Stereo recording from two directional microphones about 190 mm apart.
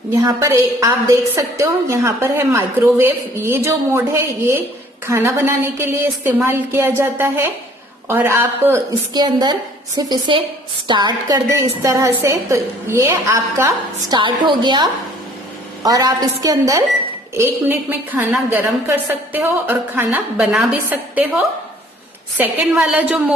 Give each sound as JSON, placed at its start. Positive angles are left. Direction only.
{"t": 0.2, "sound": "a woman's voice", "side_deg": -15}
{"t": 9.1, "sound": "a woman's voice", "side_deg": -20}
{"t": 22.4, "sound": "a woman's voice", "side_deg": -10}